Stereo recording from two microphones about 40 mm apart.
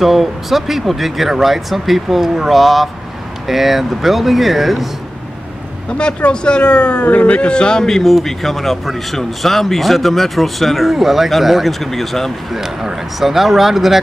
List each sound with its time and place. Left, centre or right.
0.0 s speech: centre
5.9 s speech: left
8.0 s speech: centre
12.5 s speech: centre